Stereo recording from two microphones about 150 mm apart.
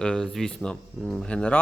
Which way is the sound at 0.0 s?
5° left (ahead or behind).